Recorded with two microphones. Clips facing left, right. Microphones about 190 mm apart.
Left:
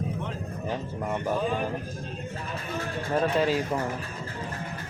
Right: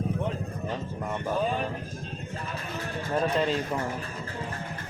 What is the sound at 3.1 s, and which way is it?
Speech, 5° left (ahead or behind).